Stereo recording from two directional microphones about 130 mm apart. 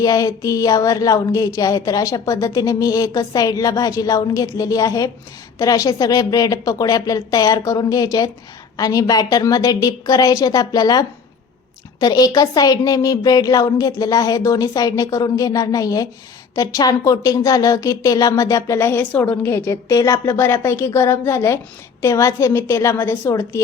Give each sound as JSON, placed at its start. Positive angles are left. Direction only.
{"t": 0.0, "sound": "speech", "side_deg": 25}